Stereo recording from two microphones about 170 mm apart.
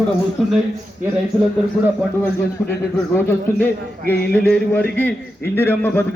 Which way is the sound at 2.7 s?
10° left (ahead or behind).